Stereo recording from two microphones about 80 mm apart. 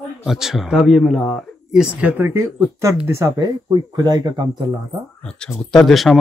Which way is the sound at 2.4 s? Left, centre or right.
Right.